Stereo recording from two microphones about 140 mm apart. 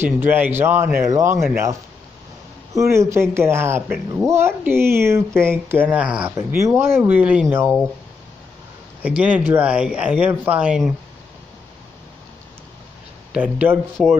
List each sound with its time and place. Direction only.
0.0 s speech: 15° right (ahead or behind)
6.3 s speech: 20° right (ahead or behind)
9.0 s speech: 10° right (ahead or behind)
13.3 s speech: 10° right (ahead or behind)